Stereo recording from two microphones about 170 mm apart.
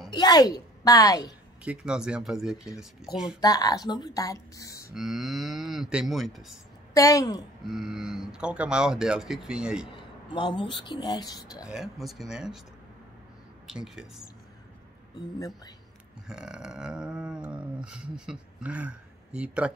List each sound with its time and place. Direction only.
0.1 s a woman's voice: 25° left (ahead or behind)
1.6 s speech: 5° right (ahead or behind)
3.3 s speech: 20° left (ahead or behind)
4.9 s speech: centre (ahead or behind)
6.9 s a woman's voice: 20° left (ahead or behind)
7.6 s speech: 5° right (ahead or behind)
10.3 s speech: 30° left (ahead or behind)
11.6 s speech: 5° right (ahead or behind)
13.7 s speech: 5° right (ahead or behind)
15.3 s speech: 20° left (ahead or behind)
16.3 s a sound: 5° right (ahead or behind)